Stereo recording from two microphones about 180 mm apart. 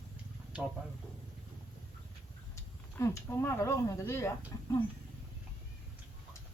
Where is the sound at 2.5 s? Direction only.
15° left (ahead or behind).